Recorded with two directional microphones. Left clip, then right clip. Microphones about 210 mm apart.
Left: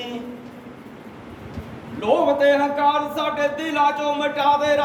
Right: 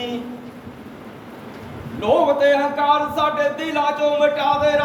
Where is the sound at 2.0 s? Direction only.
15° left (ahead or behind); by 4.7 s 35° left (ahead or behind).